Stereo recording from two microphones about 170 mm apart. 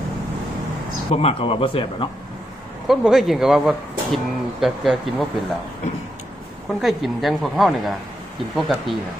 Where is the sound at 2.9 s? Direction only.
Centre (ahead or behind).